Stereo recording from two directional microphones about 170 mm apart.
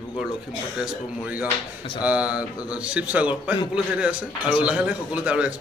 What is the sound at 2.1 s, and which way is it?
A man's voice, 10° right (ahead or behind).